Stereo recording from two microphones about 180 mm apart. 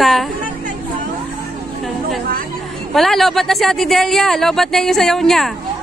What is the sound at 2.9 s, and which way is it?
Speech, centre (ahead or behind).